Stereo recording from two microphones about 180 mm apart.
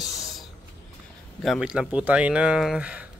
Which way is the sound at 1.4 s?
Centre (ahead or behind).